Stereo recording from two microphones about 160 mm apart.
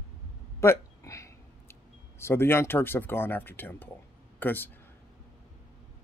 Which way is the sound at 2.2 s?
15° left (ahead or behind).